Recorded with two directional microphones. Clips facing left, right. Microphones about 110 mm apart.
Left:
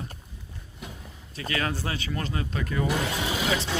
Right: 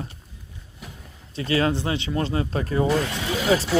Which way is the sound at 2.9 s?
5° left (ahead or behind).